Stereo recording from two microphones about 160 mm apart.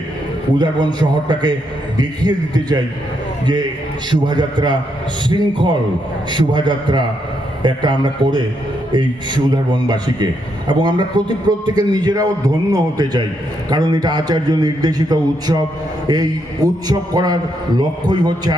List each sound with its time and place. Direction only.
0.6 s a man's voice: 25° right (ahead or behind)
4.1 s a man's voice: 30° right (ahead or behind)